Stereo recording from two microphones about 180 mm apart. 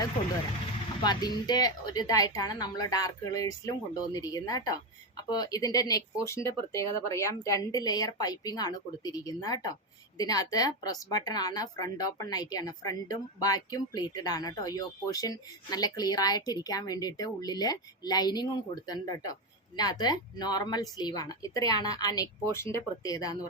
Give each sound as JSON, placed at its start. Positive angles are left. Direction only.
{"t": 1.0, "sound": "speech", "side_deg": 25}